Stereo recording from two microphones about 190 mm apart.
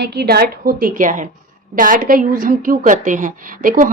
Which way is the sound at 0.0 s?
55° right (ahead or behind).